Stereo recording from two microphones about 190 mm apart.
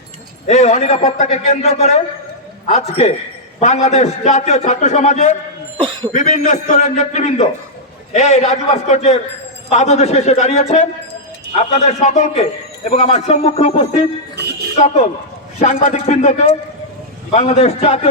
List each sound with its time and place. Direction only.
0.4 s a man's voice: 35° left (ahead or behind)